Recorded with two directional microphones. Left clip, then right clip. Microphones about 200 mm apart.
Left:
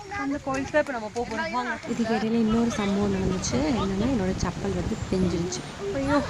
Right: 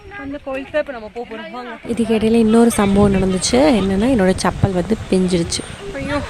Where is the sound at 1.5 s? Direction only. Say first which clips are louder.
Right 4 dB; 40° right (ahead or behind).